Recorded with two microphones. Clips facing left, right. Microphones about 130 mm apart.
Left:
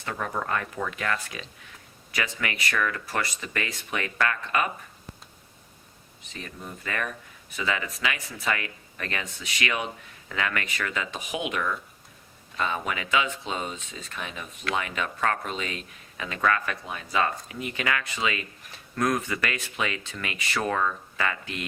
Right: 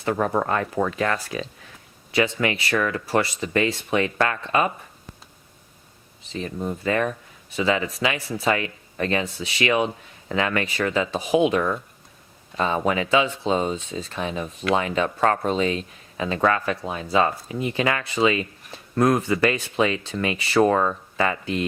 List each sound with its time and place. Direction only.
0.0 s speech: 35° right (ahead or behind)
6.2 s speech: 30° right (ahead or behind)